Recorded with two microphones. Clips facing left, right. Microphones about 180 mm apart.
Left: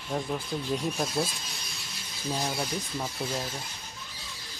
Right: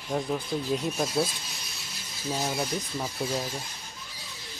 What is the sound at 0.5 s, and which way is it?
Speech, centre (ahead or behind).